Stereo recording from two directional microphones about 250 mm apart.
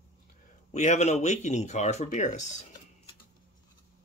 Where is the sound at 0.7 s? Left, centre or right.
Left.